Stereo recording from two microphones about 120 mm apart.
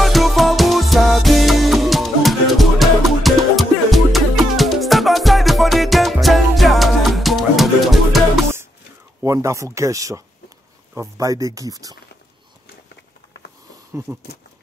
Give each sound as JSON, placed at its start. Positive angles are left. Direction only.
{"t": 0.0, "sound": "music", "side_deg": 0}
{"t": 9.2, "sound": "speech", "side_deg": -25}
{"t": 14.1, "sound": "a sound", "side_deg": -10}